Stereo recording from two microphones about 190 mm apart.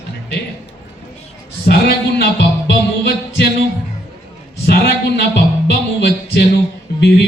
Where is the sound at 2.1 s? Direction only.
60° left (ahead or behind).